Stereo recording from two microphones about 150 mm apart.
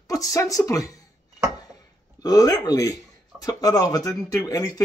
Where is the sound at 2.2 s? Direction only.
25° left (ahead or behind).